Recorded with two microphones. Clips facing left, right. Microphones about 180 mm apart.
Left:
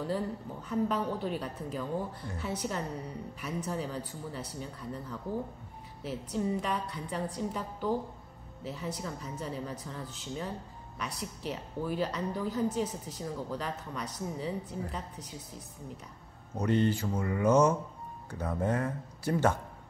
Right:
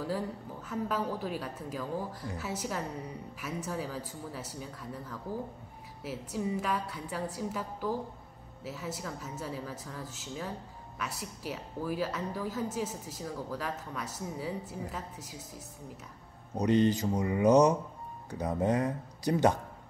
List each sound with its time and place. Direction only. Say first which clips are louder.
0.0 s a woman's voice: left 1 dB; 5° right (ahead or behind)
6.0 s a woman's voice: left 2 dB; 5° right (ahead or behind)
16.5 s a woman's voice: right 2 dB; 15° right (ahead or behind)